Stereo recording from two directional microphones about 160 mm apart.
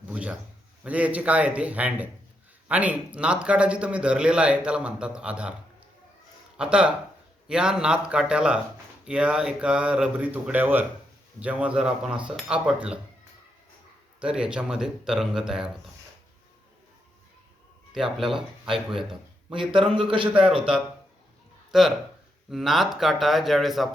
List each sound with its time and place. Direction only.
0.1 s a sound: 5° right (ahead or behind)
0.9 s speech: 10° right (ahead or behind)
6.6 s speech: 5° right (ahead or behind)
14.2 s speech: 5° right (ahead or behind)
17.9 s speech: 5° right (ahead or behind)
19.5 s speech: 30° right (ahead or behind)
20.3 s speech: 5° right (ahead or behind)
21.7 s speech: centre (ahead or behind)